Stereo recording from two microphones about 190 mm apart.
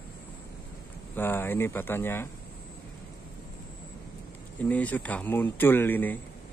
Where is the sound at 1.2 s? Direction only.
10° left (ahead or behind).